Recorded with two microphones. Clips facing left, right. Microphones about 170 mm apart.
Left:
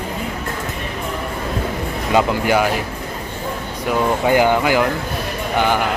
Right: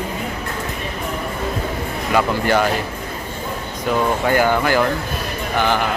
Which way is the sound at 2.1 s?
10° left (ahead or behind).